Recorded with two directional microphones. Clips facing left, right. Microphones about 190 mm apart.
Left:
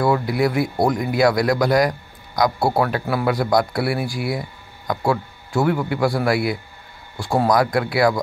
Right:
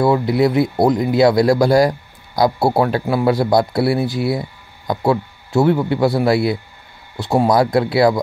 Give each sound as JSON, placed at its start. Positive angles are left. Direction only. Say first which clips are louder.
{"t": 0.0, "sound": "speech", "louder": "right 4 dB", "side_deg": -25}